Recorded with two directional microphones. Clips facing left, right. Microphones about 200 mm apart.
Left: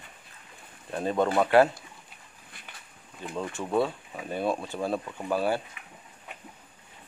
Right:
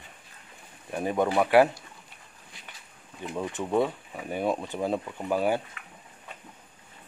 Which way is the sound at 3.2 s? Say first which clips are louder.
Right 2 dB; 15° right (ahead or behind).